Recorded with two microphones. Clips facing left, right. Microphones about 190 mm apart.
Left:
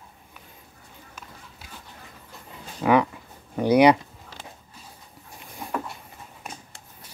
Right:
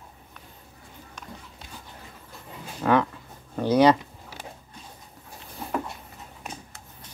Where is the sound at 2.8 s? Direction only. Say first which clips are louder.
Left 2 dB; 10° left (ahead or behind).